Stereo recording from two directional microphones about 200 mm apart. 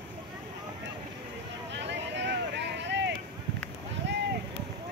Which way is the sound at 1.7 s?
60° right (ahead or behind).